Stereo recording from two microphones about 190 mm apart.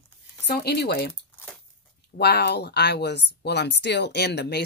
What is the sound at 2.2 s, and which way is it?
Speech, 60° left (ahead or behind).